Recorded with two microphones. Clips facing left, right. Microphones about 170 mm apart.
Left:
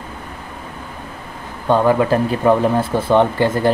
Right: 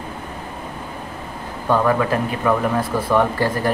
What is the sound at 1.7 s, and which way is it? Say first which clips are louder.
Speech: left 4 dB; 25° left (ahead or behind).